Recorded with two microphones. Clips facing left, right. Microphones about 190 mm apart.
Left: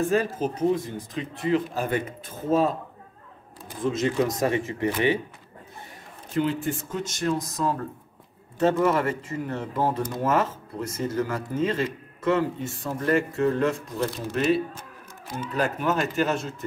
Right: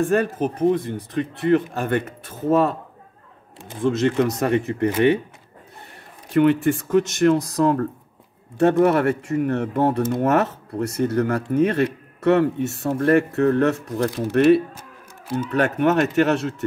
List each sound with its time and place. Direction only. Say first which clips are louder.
0.1 s speech: right 4 dB; 60° right (ahead or behind)
3.8 s speech: right 5 dB; 70° right (ahead or behind)
6.3 s speech: right 9 dB; 70° right (ahead or behind)